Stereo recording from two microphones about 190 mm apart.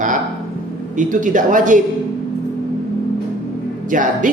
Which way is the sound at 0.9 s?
40° right (ahead or behind).